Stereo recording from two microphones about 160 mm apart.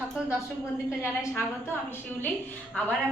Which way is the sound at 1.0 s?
15° left (ahead or behind).